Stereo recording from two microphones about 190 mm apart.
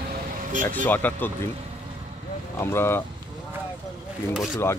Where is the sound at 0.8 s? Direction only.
10° left (ahead or behind).